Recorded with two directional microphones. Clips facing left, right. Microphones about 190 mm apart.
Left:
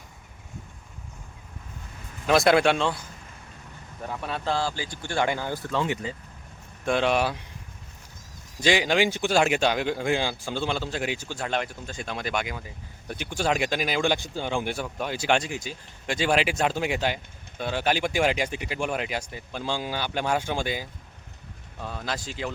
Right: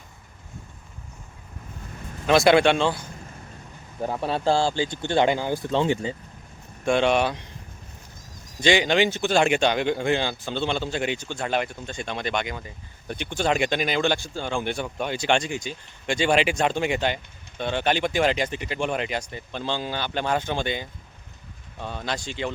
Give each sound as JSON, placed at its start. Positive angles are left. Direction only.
{"t": 2.2, "sound": "speech", "side_deg": 0}
{"t": 4.0, "sound": "speech", "side_deg": -30}
{"t": 6.8, "sound": "speech", "side_deg": 0}
{"t": 8.6, "sound": "speech", "side_deg": 5}